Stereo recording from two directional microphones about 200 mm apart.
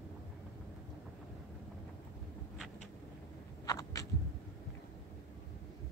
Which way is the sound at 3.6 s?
15° left (ahead or behind).